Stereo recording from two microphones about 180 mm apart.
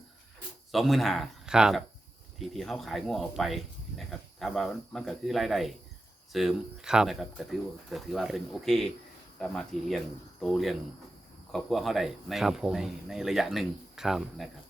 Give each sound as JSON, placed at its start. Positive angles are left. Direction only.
{"t": 0.7, "sound": "speech", "side_deg": 0}